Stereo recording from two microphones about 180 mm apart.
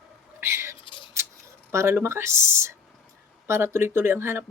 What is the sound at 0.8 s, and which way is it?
Scissors, 25° left (ahead or behind).